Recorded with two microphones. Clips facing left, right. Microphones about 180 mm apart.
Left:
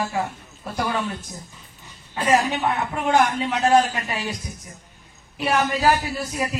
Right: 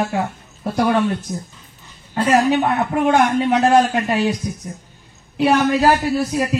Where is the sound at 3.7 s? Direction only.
60° right (ahead or behind).